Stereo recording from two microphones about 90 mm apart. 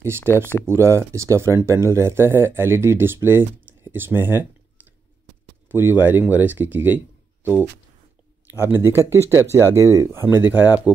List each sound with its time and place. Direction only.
0.0 s speech: 30° right (ahead or behind)
5.7 s speech: 25° right (ahead or behind)
8.5 s speech: 25° right (ahead or behind)